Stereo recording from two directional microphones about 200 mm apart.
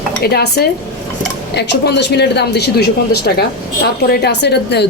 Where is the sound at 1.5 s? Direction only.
55° left (ahead or behind).